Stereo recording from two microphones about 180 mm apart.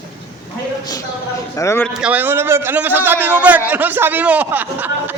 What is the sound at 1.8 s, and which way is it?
A man's voice, 5° right (ahead or behind).